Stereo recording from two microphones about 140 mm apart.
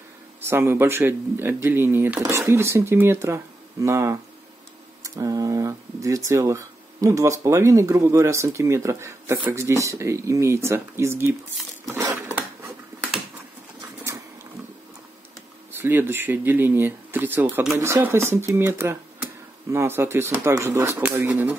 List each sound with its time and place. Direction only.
0.5 s speech: 15° right (ahead or behind)
11.8 s a sound: 20° right (ahead or behind)
15.7 s speech: 15° right (ahead or behind)